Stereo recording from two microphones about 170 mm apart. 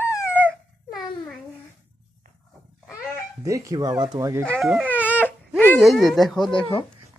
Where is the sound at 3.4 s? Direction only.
20° right (ahead or behind).